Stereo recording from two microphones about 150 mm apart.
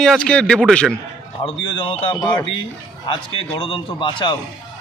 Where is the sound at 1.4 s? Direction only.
35° left (ahead or behind).